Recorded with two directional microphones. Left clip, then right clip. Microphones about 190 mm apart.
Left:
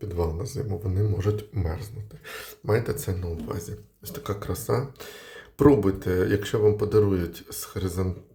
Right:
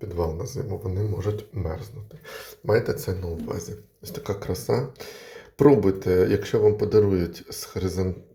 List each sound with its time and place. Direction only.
0.1 s speech: 15° left (ahead or behind)
2.6 s speech: 5° left (ahead or behind)